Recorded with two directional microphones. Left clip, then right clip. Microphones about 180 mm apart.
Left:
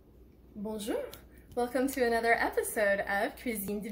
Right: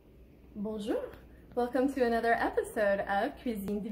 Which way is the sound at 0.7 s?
Centre (ahead or behind).